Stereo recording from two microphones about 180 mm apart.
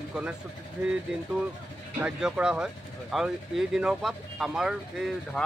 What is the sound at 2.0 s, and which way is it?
Speech, 5° right (ahead or behind).